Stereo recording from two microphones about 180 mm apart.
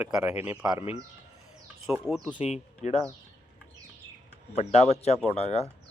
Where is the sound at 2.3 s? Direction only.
35° left (ahead or behind).